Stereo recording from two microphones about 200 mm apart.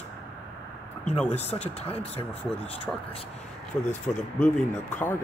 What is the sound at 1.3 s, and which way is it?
Speech, 30° left (ahead or behind).